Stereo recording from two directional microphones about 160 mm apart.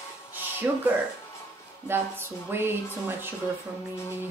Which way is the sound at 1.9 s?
15° right (ahead or behind).